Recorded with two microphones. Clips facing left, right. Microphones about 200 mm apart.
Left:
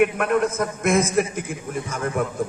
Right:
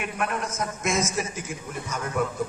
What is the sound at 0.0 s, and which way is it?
A man's voice, 60° left (ahead or behind).